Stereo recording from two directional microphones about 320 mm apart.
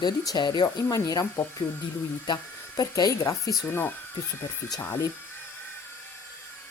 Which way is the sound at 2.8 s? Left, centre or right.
Centre.